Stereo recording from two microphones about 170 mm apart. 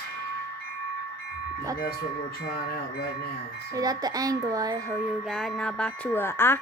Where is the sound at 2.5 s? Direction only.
65° left (ahead or behind).